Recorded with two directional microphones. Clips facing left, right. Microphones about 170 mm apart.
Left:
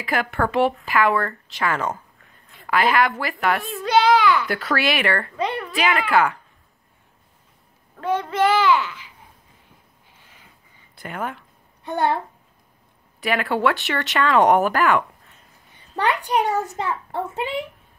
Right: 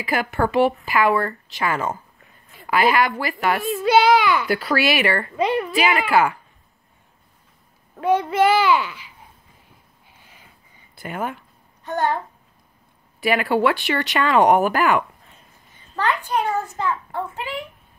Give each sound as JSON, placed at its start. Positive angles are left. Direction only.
{"t": 0.0, "sound": "a woman's voice", "side_deg": -5}
{"t": 8.0, "sound": "a woman's voice", "side_deg": -10}
{"t": 11.0, "sound": "speech", "side_deg": -5}
{"t": 11.8, "sound": "a child's voice", "side_deg": 10}
{"t": 13.2, "sound": "speech", "side_deg": -5}
{"t": 16.1, "sound": "a child's voice", "side_deg": 15}